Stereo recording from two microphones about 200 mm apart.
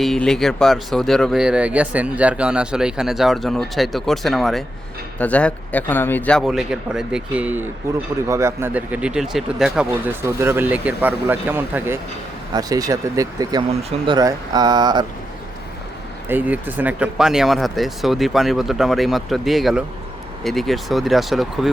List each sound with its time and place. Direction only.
0.0 s speech: centre (ahead or behind); by 15.0 s 20° right (ahead or behind)
16.3 s speech: 10° right (ahead or behind)